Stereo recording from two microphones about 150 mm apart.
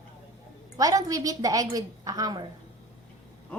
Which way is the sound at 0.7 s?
25° right (ahead or behind).